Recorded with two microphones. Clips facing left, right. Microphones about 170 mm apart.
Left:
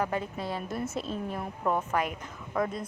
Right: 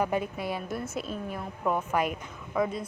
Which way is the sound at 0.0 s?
15° right (ahead or behind).